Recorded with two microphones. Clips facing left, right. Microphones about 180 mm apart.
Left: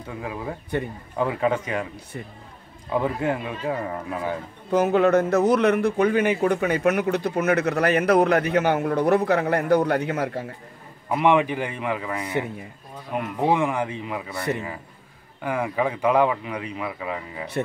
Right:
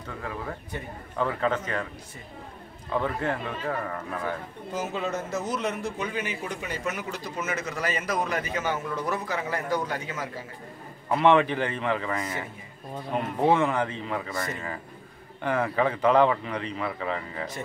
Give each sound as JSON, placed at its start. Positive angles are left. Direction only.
{"t": 0.2, "sound": "speech", "side_deg": 15}
{"t": 2.9, "sound": "speech", "side_deg": 10}
{"t": 4.7, "sound": "a man's voice", "side_deg": 65}
{"t": 11.1, "sound": "speech", "side_deg": 10}
{"t": 13.4, "sound": "speech", "side_deg": 15}
{"t": 15.4, "sound": "speech", "side_deg": 10}